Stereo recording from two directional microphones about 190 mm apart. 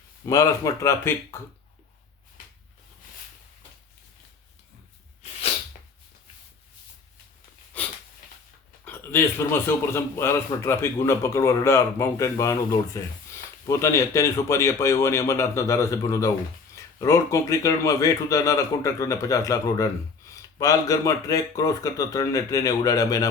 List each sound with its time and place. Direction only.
0.3 s a man's voice: 15° left (ahead or behind)
7.7 s a sound: 10° left (ahead or behind)
8.8 s a man's voice: 10° left (ahead or behind)